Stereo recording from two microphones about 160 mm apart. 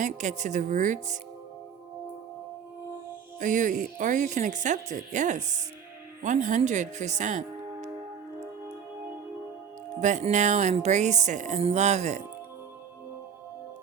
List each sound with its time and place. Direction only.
0.0 s speech: 50° right (ahead or behind)
3.3 s speech: 55° right (ahead or behind)
10.0 s speech: 50° right (ahead or behind)